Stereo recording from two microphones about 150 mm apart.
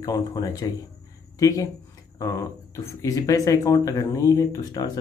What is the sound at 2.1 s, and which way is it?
Speech, 20° left (ahead or behind).